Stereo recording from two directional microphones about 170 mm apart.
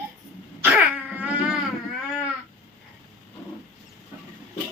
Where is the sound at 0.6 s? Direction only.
10° right (ahead or behind).